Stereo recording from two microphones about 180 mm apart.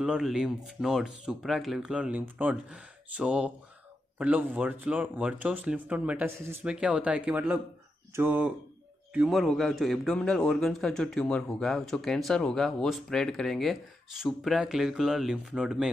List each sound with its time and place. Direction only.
0.0 s speech: 5° right (ahead or behind)